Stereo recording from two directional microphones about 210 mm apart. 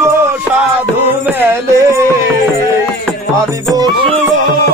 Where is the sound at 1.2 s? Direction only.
10° right (ahead or behind).